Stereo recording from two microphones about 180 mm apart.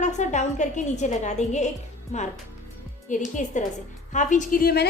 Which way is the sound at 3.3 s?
45° left (ahead or behind).